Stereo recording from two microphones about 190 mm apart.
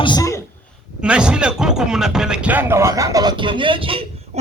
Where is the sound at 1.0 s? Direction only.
5° right (ahead or behind).